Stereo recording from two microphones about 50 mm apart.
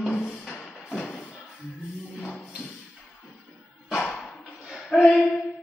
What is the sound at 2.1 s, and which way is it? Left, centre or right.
Tambourine, centre.